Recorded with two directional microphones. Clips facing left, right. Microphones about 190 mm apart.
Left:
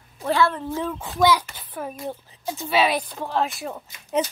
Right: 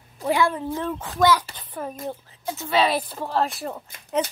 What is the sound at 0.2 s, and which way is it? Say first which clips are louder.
Speech: even; 15° right (ahead or behind).